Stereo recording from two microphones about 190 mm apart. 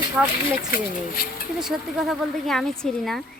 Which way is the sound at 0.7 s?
50° left (ahead or behind).